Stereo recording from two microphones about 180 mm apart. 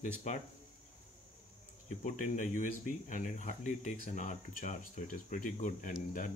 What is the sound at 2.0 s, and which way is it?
Speech, 45° left (ahead or behind).